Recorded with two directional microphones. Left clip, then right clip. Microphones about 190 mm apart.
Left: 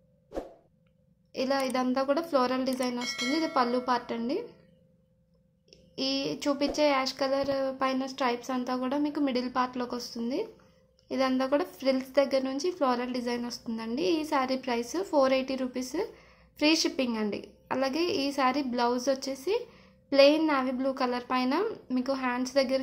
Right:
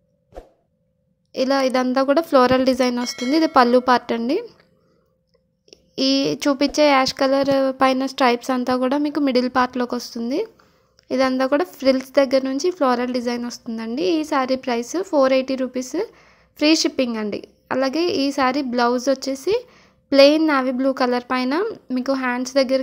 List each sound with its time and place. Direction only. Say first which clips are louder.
0.3 s a sound: left 3 dB; centre (ahead or behind)
1.3 s speech: right 10 dB; 35° right (ahead or behind)
5.7 s speech: right 11 dB; 40° right (ahead or behind)